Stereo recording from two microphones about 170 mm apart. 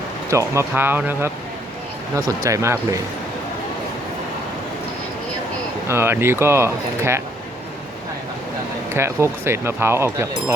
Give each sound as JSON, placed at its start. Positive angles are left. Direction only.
{"t": 0.3, "sound": "speech", "side_deg": -15}
{"t": 5.9, "sound": "speech", "side_deg": -15}
{"t": 8.9, "sound": "speech", "side_deg": -15}